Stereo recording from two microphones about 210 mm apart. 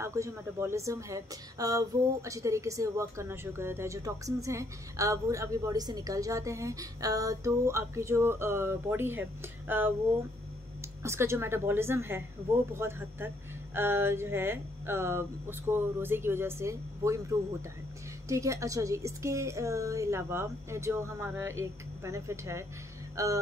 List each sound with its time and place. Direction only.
0.0 s speech: 15° right (ahead or behind)
11.0 s speech: 15° right (ahead or behind)